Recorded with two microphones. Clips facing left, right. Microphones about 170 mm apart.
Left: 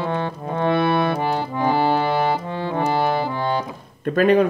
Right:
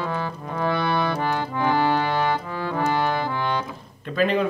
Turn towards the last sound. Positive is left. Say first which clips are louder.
# left 6 dB
turn(degrees=50)  # may be behind; listen again after turning